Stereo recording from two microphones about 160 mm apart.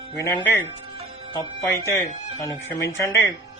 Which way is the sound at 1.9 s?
20° left (ahead or behind).